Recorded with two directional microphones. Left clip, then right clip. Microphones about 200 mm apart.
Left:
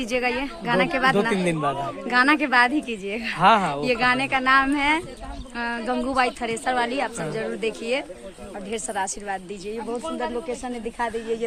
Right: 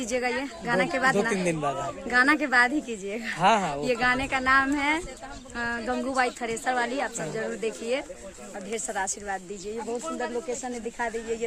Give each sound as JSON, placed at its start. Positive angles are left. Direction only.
{"t": 0.0, "sound": "a woman's voice", "side_deg": -15}
{"t": 1.1, "sound": "a woman's voice", "side_deg": -5}
{"t": 2.0, "sound": "a woman's voice", "side_deg": -15}
{"t": 10.5, "sound": "a woman's voice", "side_deg": -15}